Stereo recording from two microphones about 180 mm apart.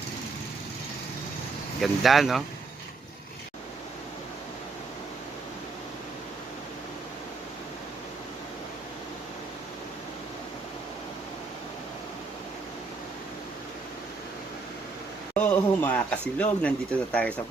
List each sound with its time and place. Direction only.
1.8 s speech: centre (ahead or behind)
15.4 s speech: 10° left (ahead or behind)